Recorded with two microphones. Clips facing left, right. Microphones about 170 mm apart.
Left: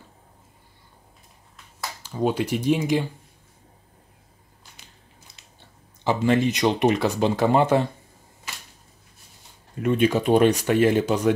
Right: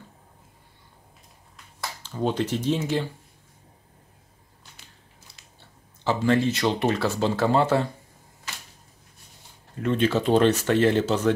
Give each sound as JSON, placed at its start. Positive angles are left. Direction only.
{"t": 2.0, "sound": "speech", "side_deg": 10}
{"t": 5.4, "sound": "biting", "side_deg": 20}
{"t": 6.0, "sound": "speech", "side_deg": 15}
{"t": 9.8, "sound": "speech", "side_deg": 15}